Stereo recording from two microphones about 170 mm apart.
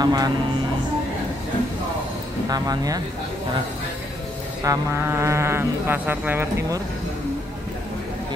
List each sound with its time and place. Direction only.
0.0 s speech: 25° right (ahead or behind)
2.5 s speech: 20° right (ahead or behind)
4.6 s speech: 15° right (ahead or behind)